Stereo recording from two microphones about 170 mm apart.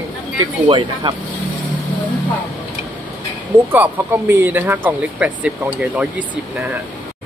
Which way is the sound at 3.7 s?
10° right (ahead or behind).